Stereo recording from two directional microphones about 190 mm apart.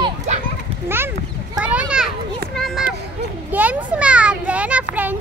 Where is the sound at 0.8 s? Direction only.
10° right (ahead or behind).